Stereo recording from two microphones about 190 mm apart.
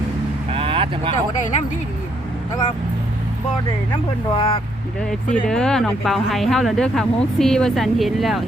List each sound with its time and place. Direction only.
0.5 s vehicle: 30° right (ahead or behind)
4.4 s speech: 30° left (ahead or behind)
5.3 s speech: 5° left (ahead or behind)